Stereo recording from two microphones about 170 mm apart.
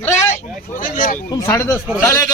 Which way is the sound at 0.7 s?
50° left (ahead or behind).